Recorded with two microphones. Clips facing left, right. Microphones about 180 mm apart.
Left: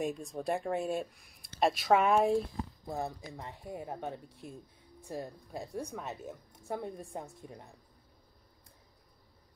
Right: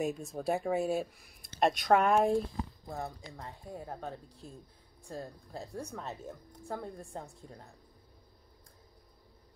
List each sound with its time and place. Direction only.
0.0 s speech: 5° right (ahead or behind)
2.9 s a woman's voice: 20° left (ahead or behind)